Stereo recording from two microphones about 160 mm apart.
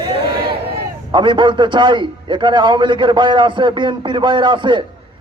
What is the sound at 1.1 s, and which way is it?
A man's voice, 30° right (ahead or behind).